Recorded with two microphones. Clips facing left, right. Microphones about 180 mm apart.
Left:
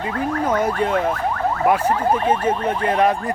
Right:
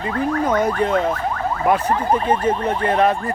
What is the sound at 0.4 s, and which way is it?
Speech, 10° left (ahead or behind).